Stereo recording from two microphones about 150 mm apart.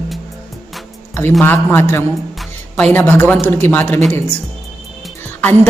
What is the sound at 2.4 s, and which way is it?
Music, 10° left (ahead or behind).